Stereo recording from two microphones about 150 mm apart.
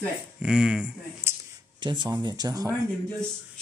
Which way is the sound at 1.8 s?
30° right (ahead or behind).